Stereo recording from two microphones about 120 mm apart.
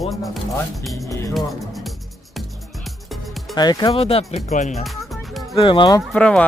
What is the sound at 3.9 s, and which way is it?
Speech, 55° left (ahead or behind).